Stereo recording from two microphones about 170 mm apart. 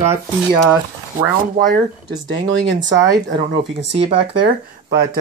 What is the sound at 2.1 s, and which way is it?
Speech, 90° right.